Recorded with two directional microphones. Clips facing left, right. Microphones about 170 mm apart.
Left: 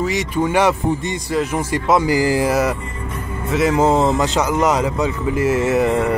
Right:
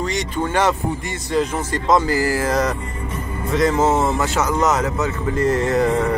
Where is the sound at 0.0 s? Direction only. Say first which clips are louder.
Left 3 dB; 10° left (ahead or behind).